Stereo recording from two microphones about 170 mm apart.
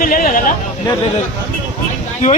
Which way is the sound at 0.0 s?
55° left (ahead or behind).